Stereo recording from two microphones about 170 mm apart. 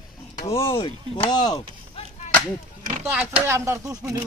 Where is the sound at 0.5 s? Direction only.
35° left (ahead or behind).